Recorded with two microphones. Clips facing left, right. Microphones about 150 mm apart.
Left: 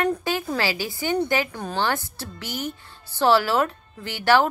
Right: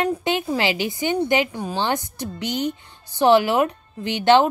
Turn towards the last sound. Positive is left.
turn(degrees=-20)  # may be behind; listen again after turning